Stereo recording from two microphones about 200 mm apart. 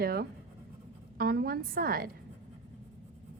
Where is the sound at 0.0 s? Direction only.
50° right (ahead or behind).